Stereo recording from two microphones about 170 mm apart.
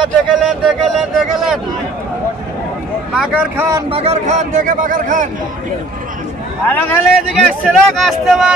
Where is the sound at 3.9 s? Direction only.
40° right (ahead or behind).